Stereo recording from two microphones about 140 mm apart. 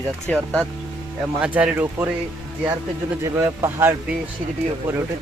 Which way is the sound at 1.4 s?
10° right (ahead or behind).